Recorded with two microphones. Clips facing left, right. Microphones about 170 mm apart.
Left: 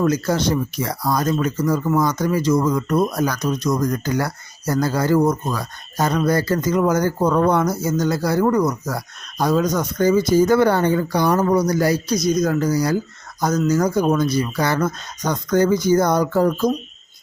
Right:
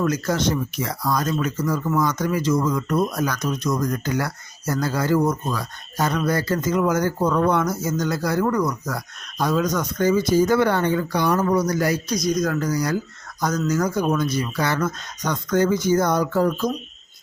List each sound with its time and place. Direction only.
0.0 s speech: 30° left (ahead or behind)